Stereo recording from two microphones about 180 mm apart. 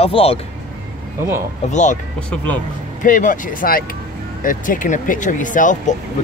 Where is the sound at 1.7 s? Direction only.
40° left (ahead or behind).